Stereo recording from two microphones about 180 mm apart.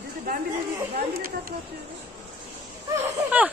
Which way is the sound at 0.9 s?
55° right (ahead or behind).